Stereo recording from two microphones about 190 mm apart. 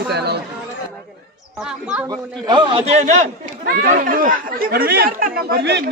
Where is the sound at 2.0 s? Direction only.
20° right (ahead or behind).